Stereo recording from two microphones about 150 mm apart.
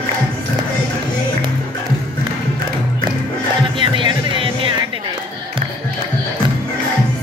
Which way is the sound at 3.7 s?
35° right (ahead or behind).